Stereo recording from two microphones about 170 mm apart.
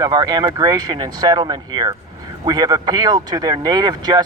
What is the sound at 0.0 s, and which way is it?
Speech, 25° right (ahead or behind).